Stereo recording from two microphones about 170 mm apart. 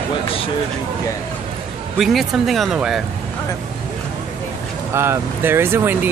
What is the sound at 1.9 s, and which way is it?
Speech, centre (ahead or behind).